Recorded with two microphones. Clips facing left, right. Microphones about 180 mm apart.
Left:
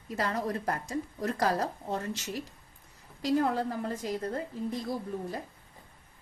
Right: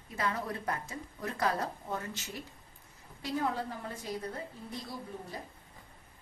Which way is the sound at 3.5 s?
45° left (ahead or behind).